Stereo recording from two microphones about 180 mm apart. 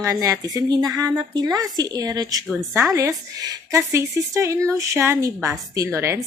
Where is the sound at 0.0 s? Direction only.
15° right (ahead or behind).